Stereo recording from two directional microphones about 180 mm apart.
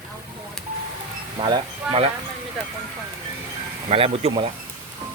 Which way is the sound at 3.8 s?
35° right (ahead or behind).